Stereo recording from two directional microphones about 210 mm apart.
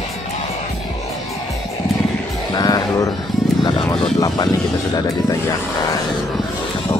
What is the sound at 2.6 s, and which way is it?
Music, 20° left (ahead or behind).